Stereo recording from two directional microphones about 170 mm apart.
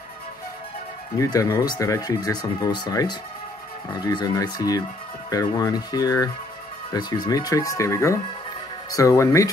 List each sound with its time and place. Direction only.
1.1 s speech: 20° left (ahead or behind)